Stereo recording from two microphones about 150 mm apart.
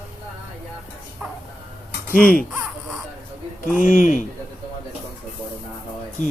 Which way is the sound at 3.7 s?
65° left (ahead or behind).